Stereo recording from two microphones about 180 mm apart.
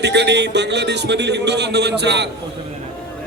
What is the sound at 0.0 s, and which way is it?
A man's voice, 70° right (ahead or behind).